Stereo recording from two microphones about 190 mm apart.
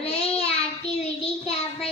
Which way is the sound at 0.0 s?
35° left (ahead or behind).